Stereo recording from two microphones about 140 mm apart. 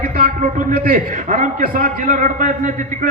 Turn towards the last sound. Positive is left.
turn(degrees=-65)  # may be behind; listen again after turning